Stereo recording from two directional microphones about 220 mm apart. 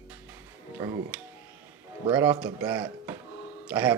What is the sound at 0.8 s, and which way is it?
Speech, 10° right (ahead or behind).